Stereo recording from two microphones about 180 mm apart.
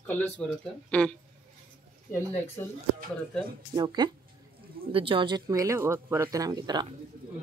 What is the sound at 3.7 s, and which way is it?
Speech, 25° right (ahead or behind).